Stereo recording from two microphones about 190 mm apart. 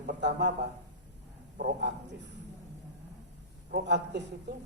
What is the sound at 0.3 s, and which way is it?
Speech, 65° right (ahead or behind).